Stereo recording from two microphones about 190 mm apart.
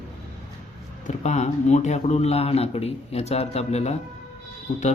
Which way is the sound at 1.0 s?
35° left (ahead or behind).